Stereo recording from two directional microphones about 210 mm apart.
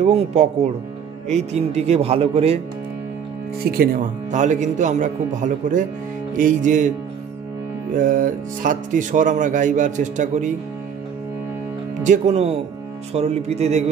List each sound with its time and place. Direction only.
0.0 s speech: 30° right (ahead or behind)
3.6 s speech: 45° right (ahead or behind)
7.9 s speech: 40° right (ahead or behind)
12.0 s speech: 35° right (ahead or behind)